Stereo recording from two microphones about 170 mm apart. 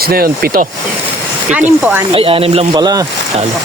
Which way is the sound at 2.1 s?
35° right (ahead or behind).